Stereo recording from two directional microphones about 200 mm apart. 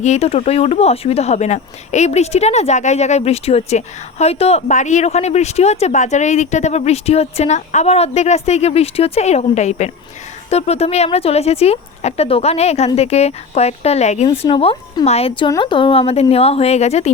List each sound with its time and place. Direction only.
0.0 s a woman's voice: 30° left (ahead or behind)